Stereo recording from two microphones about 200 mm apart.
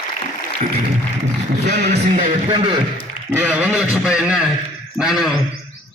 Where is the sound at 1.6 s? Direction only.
60° right (ahead or behind).